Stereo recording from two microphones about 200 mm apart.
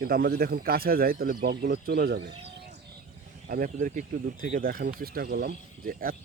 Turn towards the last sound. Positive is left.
turn(degrees=-45)  # may be behind; listen again after turning